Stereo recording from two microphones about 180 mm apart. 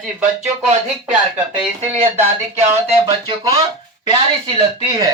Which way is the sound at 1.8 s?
40° right (ahead or behind).